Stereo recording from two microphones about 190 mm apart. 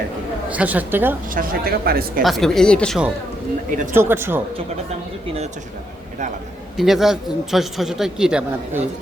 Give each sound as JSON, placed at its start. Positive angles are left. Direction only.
{"t": 0.5, "sound": "a woman's voice", "side_deg": -10}
{"t": 1.3, "sound": "speech", "side_deg": -50}
{"t": 2.2, "sound": "a man's voice", "side_deg": 0}
{"t": 3.9, "sound": "a woman's voice", "side_deg": -10}
{"t": 6.7, "sound": "a man's voice", "side_deg": 0}